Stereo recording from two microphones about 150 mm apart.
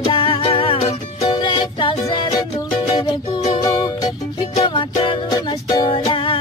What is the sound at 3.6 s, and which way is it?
Music, 25° left (ahead or behind).